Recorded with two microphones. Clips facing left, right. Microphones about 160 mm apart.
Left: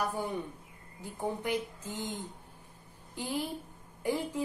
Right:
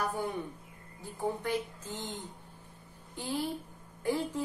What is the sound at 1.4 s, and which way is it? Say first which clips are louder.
A woman's voice: even; 15° left (ahead or behind).